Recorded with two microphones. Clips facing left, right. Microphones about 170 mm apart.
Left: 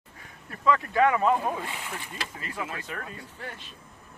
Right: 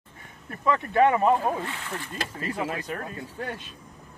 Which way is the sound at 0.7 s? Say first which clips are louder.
Right 2 dB; 25° right (ahead or behind).